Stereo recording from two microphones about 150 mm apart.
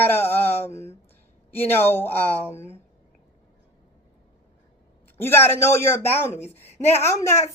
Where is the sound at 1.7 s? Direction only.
15° left (ahead or behind).